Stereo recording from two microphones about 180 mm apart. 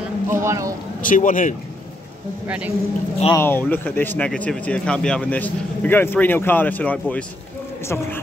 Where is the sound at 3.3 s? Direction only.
10° left (ahead or behind).